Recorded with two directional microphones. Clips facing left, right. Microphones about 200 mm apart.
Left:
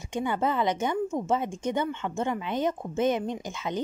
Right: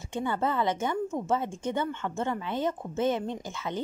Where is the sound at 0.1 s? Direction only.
15° left (ahead or behind).